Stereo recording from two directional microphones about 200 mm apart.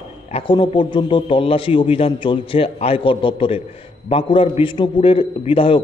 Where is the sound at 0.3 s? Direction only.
25° left (ahead or behind).